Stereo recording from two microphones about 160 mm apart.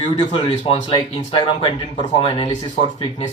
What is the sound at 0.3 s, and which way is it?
Speech, 35° left (ahead or behind).